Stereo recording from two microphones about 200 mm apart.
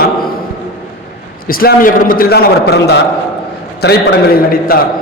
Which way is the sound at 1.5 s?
45° left (ahead or behind).